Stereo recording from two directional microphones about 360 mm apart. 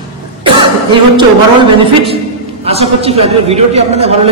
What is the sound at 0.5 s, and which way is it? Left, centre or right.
Cough, centre.